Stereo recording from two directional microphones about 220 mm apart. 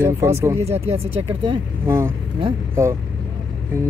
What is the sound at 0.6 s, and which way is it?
Speech, 30° right (ahead or behind).